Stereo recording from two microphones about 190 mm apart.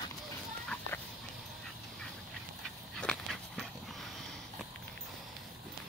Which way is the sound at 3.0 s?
5° left (ahead or behind).